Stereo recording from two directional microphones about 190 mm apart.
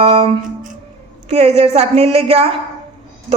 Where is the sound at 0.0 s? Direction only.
30° right (ahead or behind).